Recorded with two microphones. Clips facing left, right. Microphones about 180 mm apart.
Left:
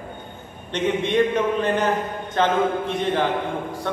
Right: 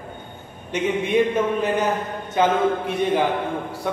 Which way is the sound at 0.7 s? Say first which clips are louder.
Even; 10° right (ahead or behind).